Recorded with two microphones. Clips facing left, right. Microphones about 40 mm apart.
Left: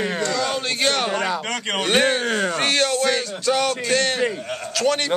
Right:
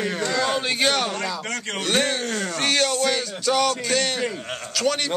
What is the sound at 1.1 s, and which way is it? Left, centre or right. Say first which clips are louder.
Speech: left 4 dB; left.